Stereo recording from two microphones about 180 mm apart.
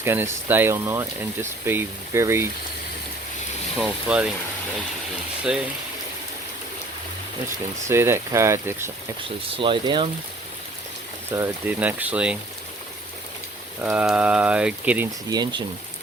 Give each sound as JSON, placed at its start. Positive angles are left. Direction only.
{"t": 0.0, "sound": "speech", "side_deg": -10}
{"t": 3.8, "sound": "speech", "side_deg": -5}
{"t": 5.4, "sound": "speech", "side_deg": -5}
{"t": 7.9, "sound": "speech", "side_deg": -15}
{"t": 9.6, "sound": "speech", "side_deg": -30}
{"t": 11.3, "sound": "speech", "side_deg": -10}
{"t": 13.8, "sound": "speech", "side_deg": -5}
{"t": 15.3, "sound": "speech", "side_deg": -20}